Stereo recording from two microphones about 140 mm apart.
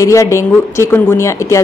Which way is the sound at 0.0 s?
20° left (ahead or behind).